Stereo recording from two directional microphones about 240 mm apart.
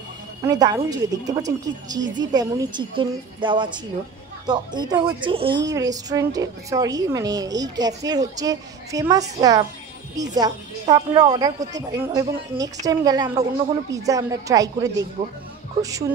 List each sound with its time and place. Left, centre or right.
0.5 s a woman's voice: centre